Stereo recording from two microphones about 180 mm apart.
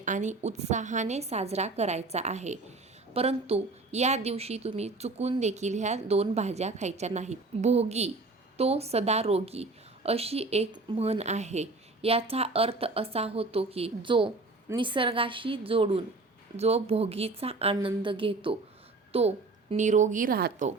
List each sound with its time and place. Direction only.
0.0 s a woman's voice: 45° right (ahead or behind)